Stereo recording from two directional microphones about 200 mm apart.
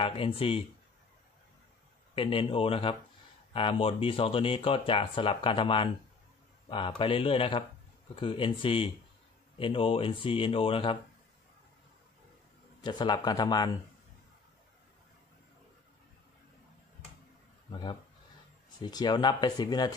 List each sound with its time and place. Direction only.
0.0 s speech: 25° left (ahead or behind)
2.1 s speech: 25° left (ahead or behind)
12.8 s speech: 20° left (ahead or behind)
17.6 s speech: 25° left (ahead or behind)